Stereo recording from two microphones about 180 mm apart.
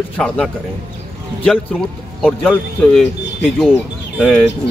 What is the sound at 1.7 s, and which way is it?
Speech, centre (ahead or behind).